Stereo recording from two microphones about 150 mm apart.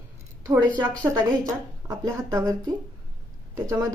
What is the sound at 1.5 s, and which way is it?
Speech, 20° right (ahead or behind).